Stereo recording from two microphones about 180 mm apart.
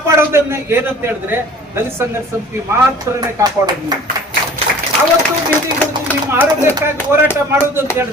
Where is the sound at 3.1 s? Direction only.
20° right (ahead or behind).